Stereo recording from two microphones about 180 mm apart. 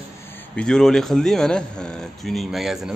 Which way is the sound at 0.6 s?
5° left (ahead or behind).